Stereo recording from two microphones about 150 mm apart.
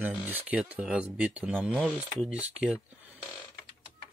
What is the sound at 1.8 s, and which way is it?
Speech, 5° left (ahead or behind).